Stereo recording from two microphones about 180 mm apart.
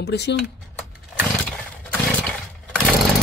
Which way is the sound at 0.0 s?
70° left (ahead or behind).